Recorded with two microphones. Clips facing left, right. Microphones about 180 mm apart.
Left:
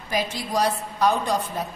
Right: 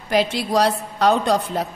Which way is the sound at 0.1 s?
75° right (ahead or behind).